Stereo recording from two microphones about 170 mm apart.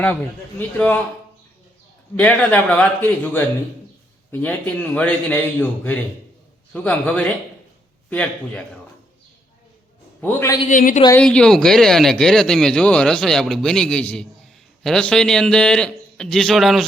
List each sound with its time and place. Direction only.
2.1 s a man's voice: 10° left (ahead or behind)
10.2 s a man's voice: 10° left (ahead or behind)
10.7 s a woman's voice: 50° left (ahead or behind)
11.2 s speech: 5° left (ahead or behind)